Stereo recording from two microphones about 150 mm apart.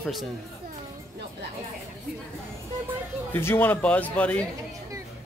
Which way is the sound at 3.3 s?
15° left (ahead or behind).